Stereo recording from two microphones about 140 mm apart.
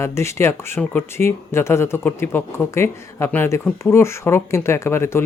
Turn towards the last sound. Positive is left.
turn(degrees=20)  # may be behind; listen again after turning